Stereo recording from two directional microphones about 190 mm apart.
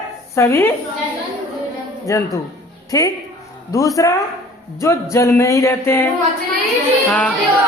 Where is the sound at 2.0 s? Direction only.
15° left (ahead or behind).